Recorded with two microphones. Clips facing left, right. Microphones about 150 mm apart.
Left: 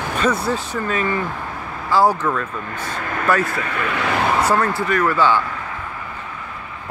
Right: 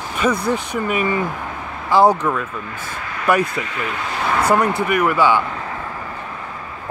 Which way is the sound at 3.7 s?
75° left (ahead or behind).